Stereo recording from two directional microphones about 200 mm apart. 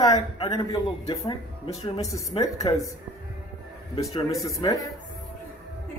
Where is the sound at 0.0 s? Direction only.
20° left (ahead or behind).